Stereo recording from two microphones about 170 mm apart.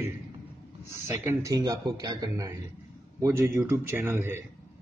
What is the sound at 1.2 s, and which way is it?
A man's voice, 20° right (ahead or behind).